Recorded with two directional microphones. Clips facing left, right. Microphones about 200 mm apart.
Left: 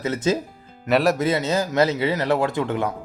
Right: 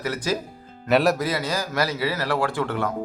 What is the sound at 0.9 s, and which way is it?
Speech, centre (ahead or behind).